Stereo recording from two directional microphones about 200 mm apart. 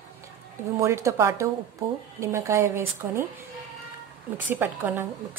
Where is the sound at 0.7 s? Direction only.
15° right (ahead or behind).